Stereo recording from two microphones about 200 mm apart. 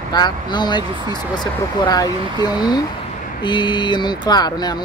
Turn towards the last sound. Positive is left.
turn(degrees=20)  # may be behind; listen again after turning